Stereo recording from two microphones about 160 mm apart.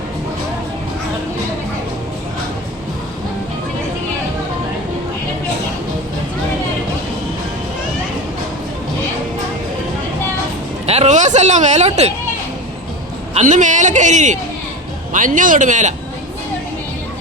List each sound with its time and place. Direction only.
10.8 s speech: 45° right (ahead or behind)
13.3 s speech: 50° right (ahead or behind)